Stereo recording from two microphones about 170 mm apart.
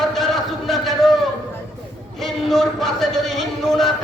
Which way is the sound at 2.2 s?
Centre (ahead or behind).